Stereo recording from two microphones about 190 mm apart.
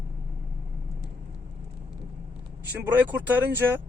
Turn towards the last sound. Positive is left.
turn(degrees=-10)  # may be behind; listen again after turning